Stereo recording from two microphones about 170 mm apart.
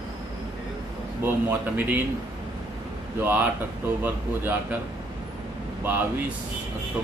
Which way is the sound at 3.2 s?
10° right (ahead or behind).